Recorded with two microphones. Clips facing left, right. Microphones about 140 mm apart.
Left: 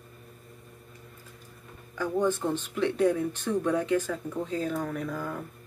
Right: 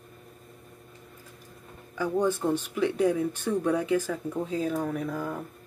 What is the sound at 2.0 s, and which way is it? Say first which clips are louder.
Speech: right 1 dB; 10° right (ahead or behind).